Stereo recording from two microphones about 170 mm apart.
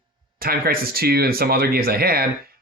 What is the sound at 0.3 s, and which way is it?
Speech, 60° right (ahead or behind).